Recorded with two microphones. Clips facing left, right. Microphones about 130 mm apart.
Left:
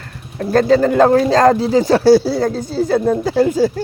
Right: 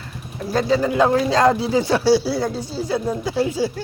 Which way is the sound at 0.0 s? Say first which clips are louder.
Left 5 dB; 55° left (ahead or behind).